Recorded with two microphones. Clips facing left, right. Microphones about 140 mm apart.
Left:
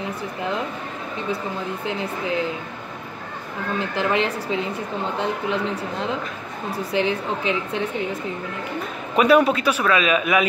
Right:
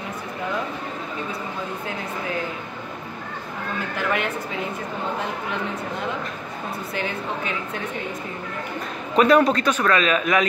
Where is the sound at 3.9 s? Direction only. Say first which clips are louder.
Left 3 dB; 30° left (ahead or behind).